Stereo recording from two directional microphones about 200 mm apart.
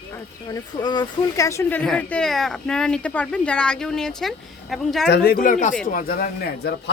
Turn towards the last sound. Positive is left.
turn(degrees=50)  # may be behind; listen again after turning